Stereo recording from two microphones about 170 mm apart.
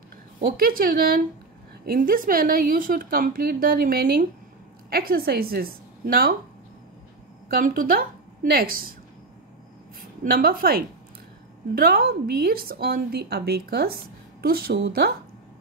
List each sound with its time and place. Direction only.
0.4 s a woman's voice: 60° right (ahead or behind)
7.4 s a woman's voice: 55° right (ahead or behind)
10.2 s a woman's voice: 60° right (ahead or behind)